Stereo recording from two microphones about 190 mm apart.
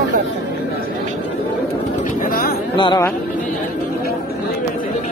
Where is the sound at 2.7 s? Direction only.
25° left (ahead or behind).